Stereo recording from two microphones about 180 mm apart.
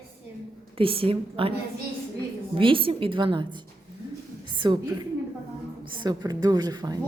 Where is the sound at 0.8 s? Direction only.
30° right (ahead or behind).